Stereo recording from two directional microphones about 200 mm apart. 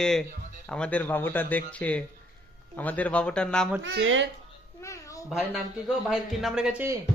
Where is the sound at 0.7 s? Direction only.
5° left (ahead or behind).